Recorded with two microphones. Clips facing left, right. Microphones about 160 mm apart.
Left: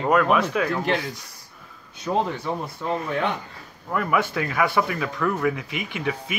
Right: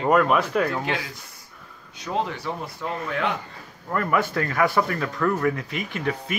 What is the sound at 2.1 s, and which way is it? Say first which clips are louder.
Speech: left 3 dB; 20° left (ahead or behind).